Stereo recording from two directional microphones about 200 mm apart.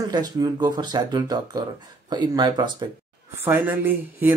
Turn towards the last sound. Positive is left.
turn(degrees=-10)  # may be behind; listen again after turning